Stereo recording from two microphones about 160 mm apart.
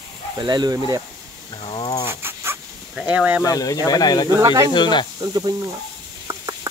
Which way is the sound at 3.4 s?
20° left (ahead or behind).